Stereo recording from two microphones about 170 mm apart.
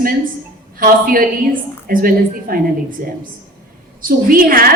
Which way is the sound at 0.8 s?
55° right (ahead or behind).